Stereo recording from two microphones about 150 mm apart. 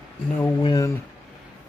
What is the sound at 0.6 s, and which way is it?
Speech, 25° left (ahead or behind).